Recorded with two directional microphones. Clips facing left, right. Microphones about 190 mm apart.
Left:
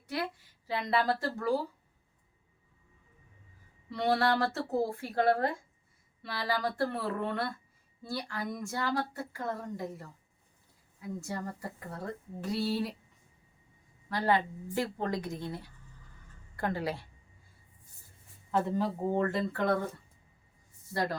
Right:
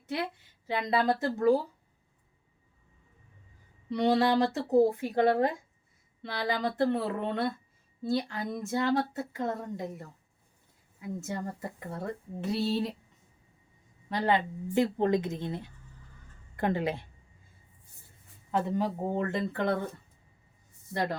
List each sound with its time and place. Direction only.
0.1 s speech: 20° right (ahead or behind)
3.8 s speech: 20° right (ahead or behind)
14.1 s speech: 20° right (ahead or behind)
18.7 s speech: 20° right (ahead or behind)
20.9 s speech: 20° right (ahead or behind)